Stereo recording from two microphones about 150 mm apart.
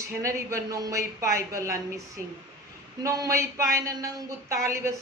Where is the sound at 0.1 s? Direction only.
20° right (ahead or behind).